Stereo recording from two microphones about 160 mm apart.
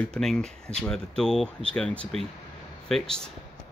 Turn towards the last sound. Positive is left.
turn(degrees=5)  # may be behind; listen again after turning